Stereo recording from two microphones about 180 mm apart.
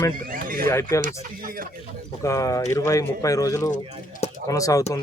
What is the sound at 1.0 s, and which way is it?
Speech, 55° right (ahead or behind).